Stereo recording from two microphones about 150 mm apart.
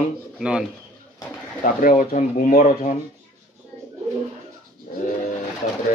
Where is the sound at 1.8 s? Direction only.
60° left (ahead or behind).